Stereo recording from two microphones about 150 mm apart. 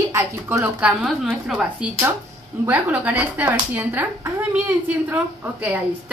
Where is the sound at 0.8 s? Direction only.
5° right (ahead or behind).